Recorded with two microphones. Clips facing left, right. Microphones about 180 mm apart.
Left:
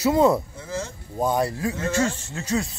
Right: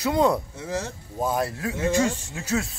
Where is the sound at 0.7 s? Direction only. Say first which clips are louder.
Right 2 dB; 65° right (ahead or behind).